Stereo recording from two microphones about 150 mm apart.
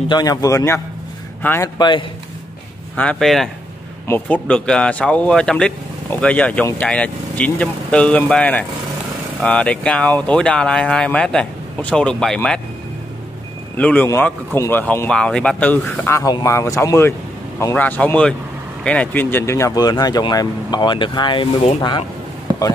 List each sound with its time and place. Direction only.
0.1 s a man's voice: 25° left (ahead or behind)
1.8 s a man's voice: 30° left (ahead or behind)
3.0 s speech: 5° left (ahead or behind)
13.7 s speech: 10° left (ahead or behind); by 22.0 s 35° left (ahead or behind)